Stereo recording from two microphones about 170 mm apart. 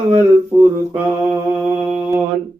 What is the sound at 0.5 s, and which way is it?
Speech, 10° right (ahead or behind).